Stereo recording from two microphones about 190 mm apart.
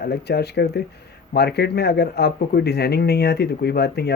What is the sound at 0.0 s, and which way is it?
Speech, 60° left (ahead or behind).